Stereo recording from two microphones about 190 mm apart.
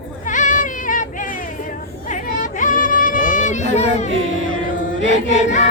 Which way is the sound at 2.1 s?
40° left (ahead or behind).